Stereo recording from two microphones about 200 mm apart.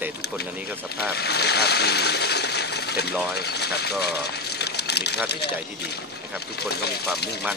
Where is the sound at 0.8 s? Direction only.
50° left (ahead or behind).